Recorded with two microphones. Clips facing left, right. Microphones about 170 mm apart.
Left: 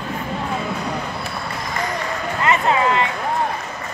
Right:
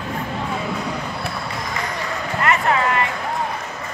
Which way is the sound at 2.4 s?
20° left (ahead or behind).